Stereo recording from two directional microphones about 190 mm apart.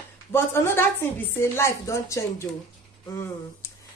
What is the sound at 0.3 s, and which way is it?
Speech, 10° left (ahead or behind).